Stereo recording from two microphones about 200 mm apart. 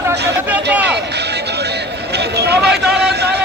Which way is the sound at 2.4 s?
55° right (ahead or behind).